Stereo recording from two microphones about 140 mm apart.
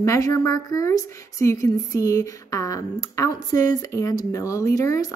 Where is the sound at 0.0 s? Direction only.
20° left (ahead or behind).